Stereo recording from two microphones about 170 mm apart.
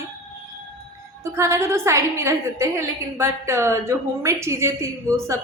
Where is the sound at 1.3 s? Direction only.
15° right (ahead or behind).